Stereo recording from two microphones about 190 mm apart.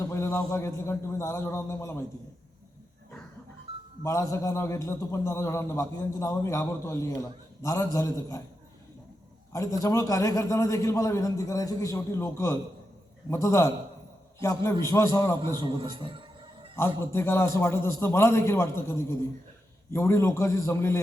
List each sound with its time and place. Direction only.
0.0 s a man's voice: 15° left (ahead or behind)
4.0 s a man's voice: 15° left (ahead or behind)
9.5 s a man's voice: 15° left (ahead or behind)
15.5 s a sound: 25° right (ahead or behind)
16.7 s a man's voice: 15° left (ahead or behind)